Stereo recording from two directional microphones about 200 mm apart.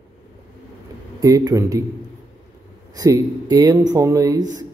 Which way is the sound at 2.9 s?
15° right (ahead or behind).